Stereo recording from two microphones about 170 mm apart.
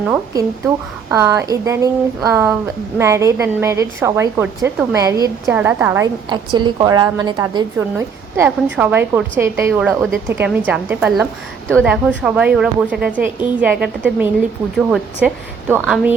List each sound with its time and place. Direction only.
0.1 s a woman's voice: 15° right (ahead or behind)
6.2 s a woman's voice: 25° right (ahead or behind)
7.8 s a woman's voice: 10° right (ahead or behind)